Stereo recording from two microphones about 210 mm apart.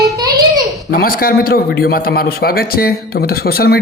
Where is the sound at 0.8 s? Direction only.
45° left (ahead or behind).